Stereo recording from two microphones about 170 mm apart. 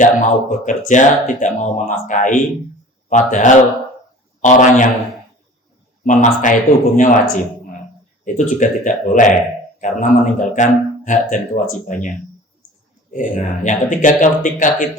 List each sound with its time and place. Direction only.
0.0 s a man's voice: 50° left (ahead or behind)
6.1 s speech: 50° left (ahead or behind)
8.2 s speech: 50° left (ahead or behind)
13.1 s speech: 50° left (ahead or behind)